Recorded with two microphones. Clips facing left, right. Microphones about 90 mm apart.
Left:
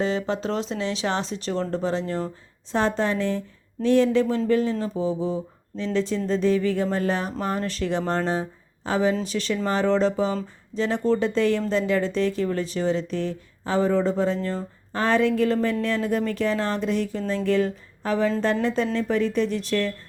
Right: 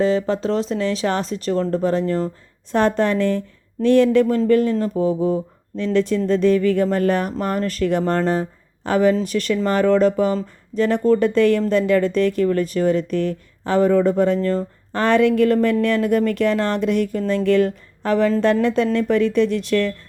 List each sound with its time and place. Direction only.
0.0 s speech: 40° right (ahead or behind)
2.7 s speech: 60° right (ahead or behind)